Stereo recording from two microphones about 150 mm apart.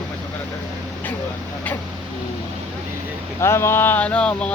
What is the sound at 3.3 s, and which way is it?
Speech, 20° left (ahead or behind).